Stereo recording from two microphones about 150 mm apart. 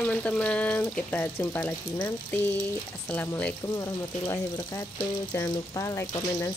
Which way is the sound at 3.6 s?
30° left (ahead or behind).